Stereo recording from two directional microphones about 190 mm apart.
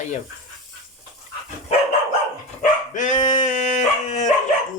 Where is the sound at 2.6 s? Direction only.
40° left (ahead or behind).